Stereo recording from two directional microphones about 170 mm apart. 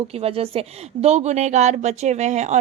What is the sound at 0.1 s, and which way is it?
Speech, 35° right (ahead or behind).